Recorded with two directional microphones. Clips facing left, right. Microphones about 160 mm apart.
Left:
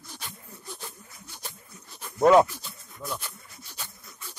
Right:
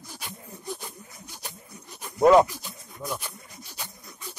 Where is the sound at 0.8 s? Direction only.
15° right (ahead or behind).